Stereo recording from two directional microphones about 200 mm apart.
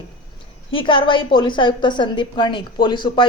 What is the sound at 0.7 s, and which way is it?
A woman's voice, 25° left (ahead or behind).